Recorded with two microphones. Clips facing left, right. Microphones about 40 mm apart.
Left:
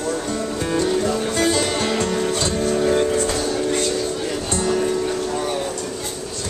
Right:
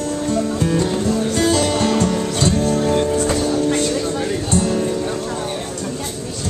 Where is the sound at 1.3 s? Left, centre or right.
Centre.